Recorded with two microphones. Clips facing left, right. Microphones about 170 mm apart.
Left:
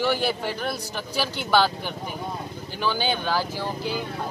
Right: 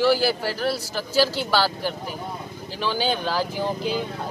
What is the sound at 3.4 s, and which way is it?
Speech, 15° right (ahead or behind).